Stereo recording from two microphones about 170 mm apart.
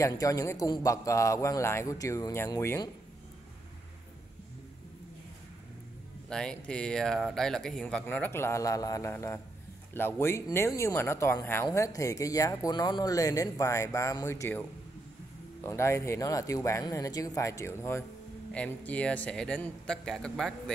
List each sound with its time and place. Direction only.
0.0 s speech: 20° left (ahead or behind)
6.2 s speech: 5° left (ahead or behind)